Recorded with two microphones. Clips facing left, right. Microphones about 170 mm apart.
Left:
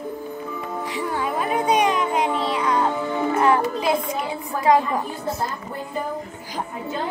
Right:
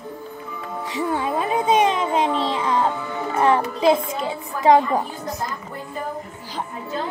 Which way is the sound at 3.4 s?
25° right (ahead or behind).